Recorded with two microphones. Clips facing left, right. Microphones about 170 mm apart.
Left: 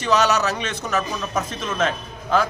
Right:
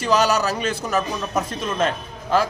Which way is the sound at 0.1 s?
30° right (ahead or behind).